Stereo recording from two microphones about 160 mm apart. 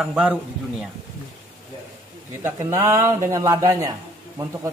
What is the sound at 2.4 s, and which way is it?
Speech, 15° right (ahead or behind).